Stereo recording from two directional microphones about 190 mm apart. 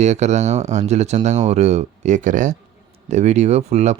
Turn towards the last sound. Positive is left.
turn(degrees=-35)  # may be behind; listen again after turning